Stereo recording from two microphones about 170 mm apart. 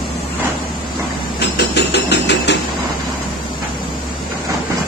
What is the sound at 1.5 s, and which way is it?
Hammer, 85° left.